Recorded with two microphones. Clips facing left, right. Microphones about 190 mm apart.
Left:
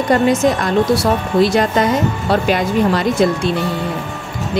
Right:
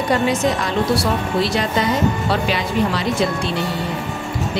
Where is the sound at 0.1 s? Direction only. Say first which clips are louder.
Left 5 dB; 45° left (ahead or behind).